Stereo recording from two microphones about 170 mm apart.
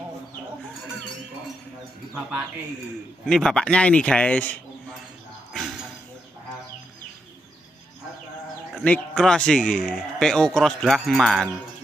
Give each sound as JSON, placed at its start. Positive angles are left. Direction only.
{"t": 3.3, "sound": "speech", "side_deg": 5}
{"t": 5.5, "sound": "a sound", "side_deg": 0}
{"t": 8.7, "sound": "speech", "side_deg": 5}